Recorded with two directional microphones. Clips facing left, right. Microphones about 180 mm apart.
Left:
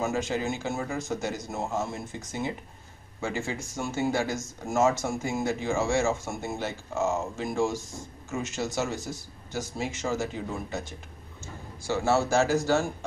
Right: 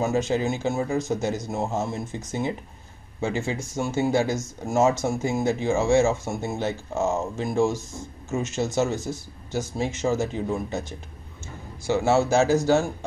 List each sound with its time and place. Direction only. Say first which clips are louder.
0.0 s speech: right 5 dB; 20° right (ahead or behind)